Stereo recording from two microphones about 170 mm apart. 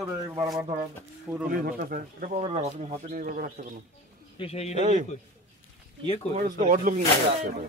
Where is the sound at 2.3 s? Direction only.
40° right (ahead or behind).